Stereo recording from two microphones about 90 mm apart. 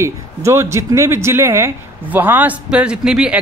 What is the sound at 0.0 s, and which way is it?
Speech, 30° right (ahead or behind).